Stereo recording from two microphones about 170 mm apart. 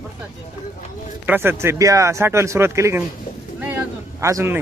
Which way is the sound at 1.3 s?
15° right (ahead or behind).